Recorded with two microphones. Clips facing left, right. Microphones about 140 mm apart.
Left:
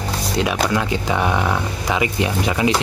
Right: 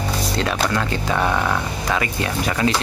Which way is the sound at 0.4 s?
10° left (ahead or behind).